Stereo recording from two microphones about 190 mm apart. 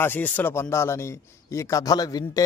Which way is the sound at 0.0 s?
10° left (ahead or behind).